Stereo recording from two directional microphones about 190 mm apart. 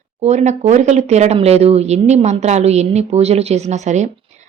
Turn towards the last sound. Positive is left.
turn(degrees=-40)  # may be behind; listen again after turning